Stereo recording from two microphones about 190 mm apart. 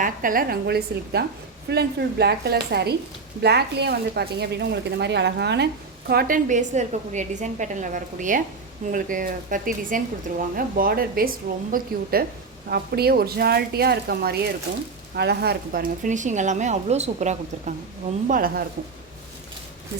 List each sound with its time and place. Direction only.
0.0 s a woman's voice: 45° right (ahead or behind); by 5.6 s 65° right (ahead or behind)
6.1 s a woman's voice: 50° right (ahead or behind)
18.3 s a woman's voice: 50° right (ahead or behind)